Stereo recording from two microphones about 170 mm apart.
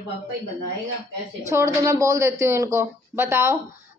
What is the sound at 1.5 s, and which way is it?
A woman's voice, 20° right (ahead or behind).